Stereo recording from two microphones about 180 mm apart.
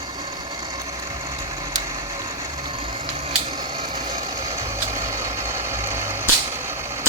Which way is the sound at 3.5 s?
25° right (ahead or behind).